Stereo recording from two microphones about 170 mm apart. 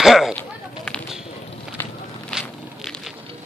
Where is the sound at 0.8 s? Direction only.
5° left (ahead or behind).